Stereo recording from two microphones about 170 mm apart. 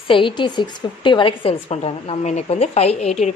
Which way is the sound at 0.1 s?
30° left (ahead or behind).